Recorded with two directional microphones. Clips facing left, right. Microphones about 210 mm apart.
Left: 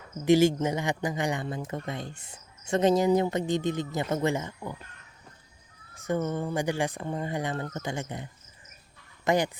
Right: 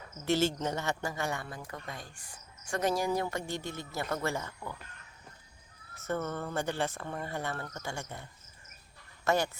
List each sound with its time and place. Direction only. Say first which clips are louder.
0.3 s speech: left 8 dB; 15° left (ahead or behind)
5.9 s speech: left 5 dB; 15° left (ahead or behind)